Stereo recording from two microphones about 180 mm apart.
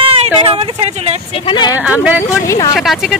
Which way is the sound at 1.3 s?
25° left (ahead or behind).